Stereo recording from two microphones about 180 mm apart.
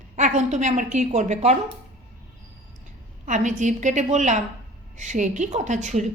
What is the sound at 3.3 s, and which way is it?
A woman's voice, 40° right (ahead or behind).